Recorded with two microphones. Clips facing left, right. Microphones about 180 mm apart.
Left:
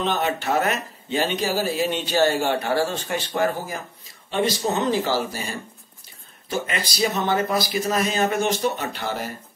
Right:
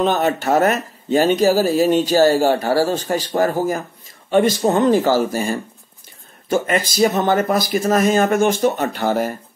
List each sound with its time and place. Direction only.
0.0 s speech: 45° right (ahead or behind)